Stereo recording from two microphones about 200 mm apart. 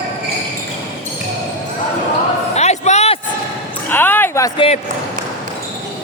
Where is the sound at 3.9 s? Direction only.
10° left (ahead or behind).